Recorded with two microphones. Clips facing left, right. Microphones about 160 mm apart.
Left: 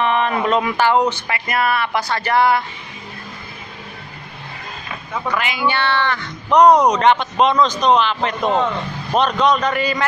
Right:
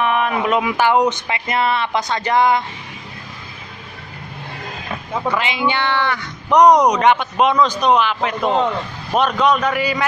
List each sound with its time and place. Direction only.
0.0 s speech: 5° right (ahead or behind)
5.3 s speech: 25° right (ahead or behind); by 10.0 s 10° right (ahead or behind)